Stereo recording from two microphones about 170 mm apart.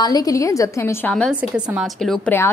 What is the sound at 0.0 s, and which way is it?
A woman's voice, 20° left (ahead or behind).